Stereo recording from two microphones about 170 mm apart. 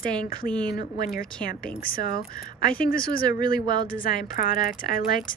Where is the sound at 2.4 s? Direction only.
55° left (ahead or behind).